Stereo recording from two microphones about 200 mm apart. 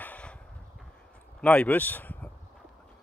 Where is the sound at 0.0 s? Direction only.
5° left (ahead or behind).